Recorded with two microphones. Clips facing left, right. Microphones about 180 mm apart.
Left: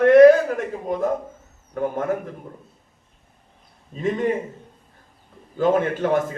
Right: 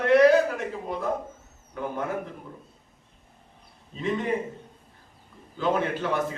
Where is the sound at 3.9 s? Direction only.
45° left (ahead or behind).